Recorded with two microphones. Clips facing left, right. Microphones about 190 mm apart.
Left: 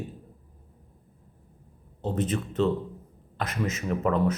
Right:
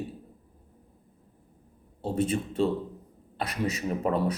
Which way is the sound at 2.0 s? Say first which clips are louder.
Right 1 dB; 10° right (ahead or behind).